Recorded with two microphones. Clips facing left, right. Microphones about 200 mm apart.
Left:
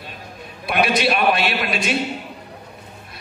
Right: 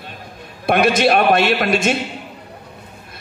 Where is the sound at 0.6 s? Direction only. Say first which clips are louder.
Right 5 dB; 50° right (ahead or behind).